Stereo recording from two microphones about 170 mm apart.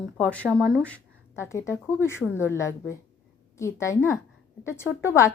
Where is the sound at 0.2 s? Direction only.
10° left (ahead or behind).